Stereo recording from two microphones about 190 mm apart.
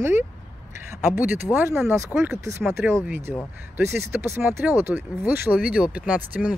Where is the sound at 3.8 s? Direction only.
15° right (ahead or behind).